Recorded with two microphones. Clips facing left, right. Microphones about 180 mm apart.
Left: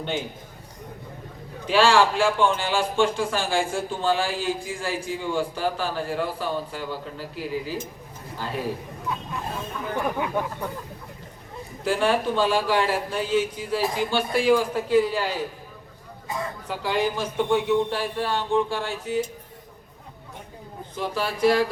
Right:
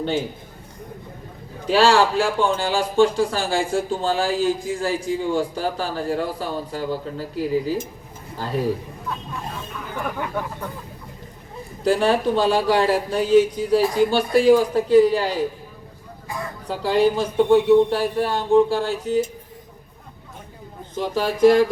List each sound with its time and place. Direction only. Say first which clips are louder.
1.6 s a man's voice: right 2 dB; 40° right (ahead or behind)
10.2 s speech: left 1 dB; 10° left (ahead or behind)
11.8 s a man's voice: right 4 dB; 40° right (ahead or behind)
16.6 s a man's voice: right 7 dB; 35° right (ahead or behind)
20.9 s speech: right 5 dB; 40° right (ahead or behind)